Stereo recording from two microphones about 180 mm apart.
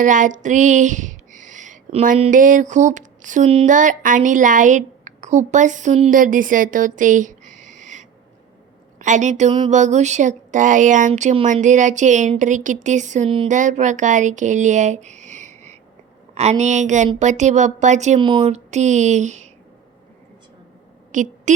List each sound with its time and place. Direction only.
0.0 s speech: 45° right (ahead or behind)
2.3 s a woman's voice: 45° right (ahead or behind)
13.5 s speech: 45° right (ahead or behind)
18.2 s speech: 30° right (ahead or behind)
21.1 s a sound: 45° right (ahead or behind)